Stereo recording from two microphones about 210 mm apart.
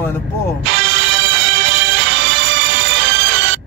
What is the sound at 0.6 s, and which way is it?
Music, 60° right (ahead or behind).